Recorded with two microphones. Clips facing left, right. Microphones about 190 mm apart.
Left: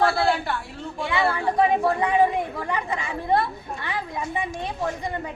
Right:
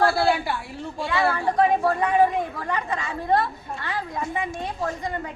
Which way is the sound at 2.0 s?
15° left (ahead or behind).